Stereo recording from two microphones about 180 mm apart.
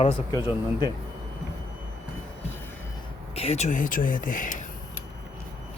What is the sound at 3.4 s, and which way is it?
Speech, 35° left (ahead or behind).